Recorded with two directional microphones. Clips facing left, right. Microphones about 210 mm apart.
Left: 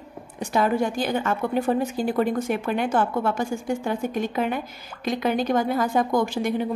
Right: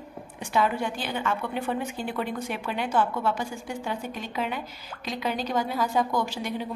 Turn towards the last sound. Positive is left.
turn(degrees=50)  # may be behind; listen again after turning